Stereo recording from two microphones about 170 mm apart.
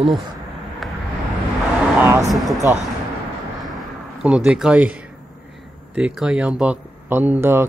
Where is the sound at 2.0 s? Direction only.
15° right (ahead or behind).